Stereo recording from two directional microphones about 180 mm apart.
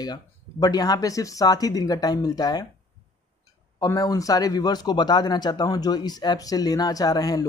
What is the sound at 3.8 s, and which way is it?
Speech, 20° left (ahead or behind).